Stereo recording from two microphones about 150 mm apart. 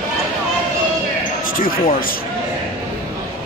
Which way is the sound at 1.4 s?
70° left (ahead or behind).